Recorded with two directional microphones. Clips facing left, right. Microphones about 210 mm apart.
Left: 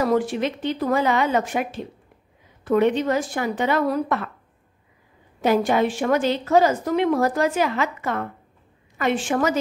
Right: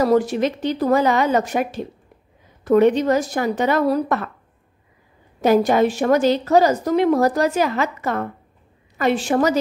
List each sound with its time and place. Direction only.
0.0 s a woman's voice: 40° right (ahead or behind)
5.4 s a woman's voice: 40° right (ahead or behind)